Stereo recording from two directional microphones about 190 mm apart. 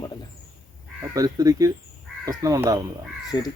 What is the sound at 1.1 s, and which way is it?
Speech, 20° right (ahead or behind).